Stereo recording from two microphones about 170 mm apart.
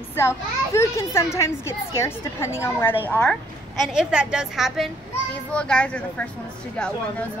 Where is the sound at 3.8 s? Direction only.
5° right (ahead or behind).